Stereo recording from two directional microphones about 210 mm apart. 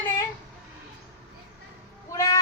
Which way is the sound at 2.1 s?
15° left (ahead or behind).